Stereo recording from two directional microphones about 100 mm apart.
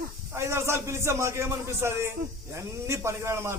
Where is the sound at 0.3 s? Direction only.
25° right (ahead or behind).